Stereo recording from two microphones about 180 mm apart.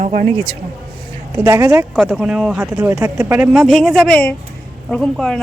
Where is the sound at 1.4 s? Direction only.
15° right (ahead or behind).